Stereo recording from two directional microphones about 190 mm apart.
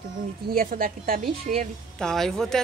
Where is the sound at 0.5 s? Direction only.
50° right (ahead or behind).